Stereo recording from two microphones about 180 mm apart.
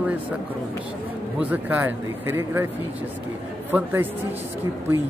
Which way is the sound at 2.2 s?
15° right (ahead or behind).